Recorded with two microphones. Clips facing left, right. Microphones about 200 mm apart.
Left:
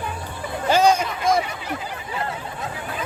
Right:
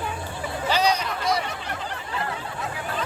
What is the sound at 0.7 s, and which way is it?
Speech, 50° left (ahead or behind).